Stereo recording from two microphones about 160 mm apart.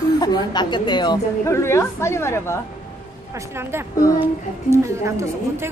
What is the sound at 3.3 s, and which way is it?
A woman's voice, 15° right (ahead or behind).